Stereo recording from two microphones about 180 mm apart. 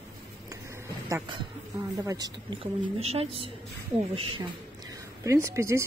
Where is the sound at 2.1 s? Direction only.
20° right (ahead or behind).